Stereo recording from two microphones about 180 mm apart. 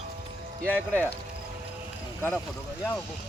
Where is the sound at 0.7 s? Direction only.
10° left (ahead or behind).